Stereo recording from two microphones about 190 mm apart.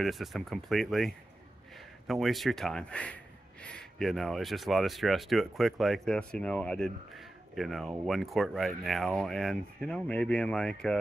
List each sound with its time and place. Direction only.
0.0 s speech: centre (ahead or behind)